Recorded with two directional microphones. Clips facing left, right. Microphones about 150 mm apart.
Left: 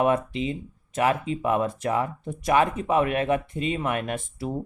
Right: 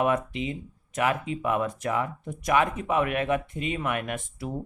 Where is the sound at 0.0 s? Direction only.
30° left (ahead or behind).